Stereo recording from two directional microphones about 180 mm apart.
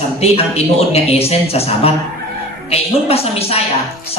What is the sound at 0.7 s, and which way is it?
A man's voice, 35° left (ahead or behind).